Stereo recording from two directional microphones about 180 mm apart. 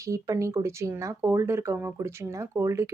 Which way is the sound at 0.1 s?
15° right (ahead or behind).